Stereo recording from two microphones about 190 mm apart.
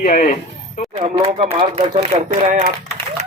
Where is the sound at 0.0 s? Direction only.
40° left (ahead or behind).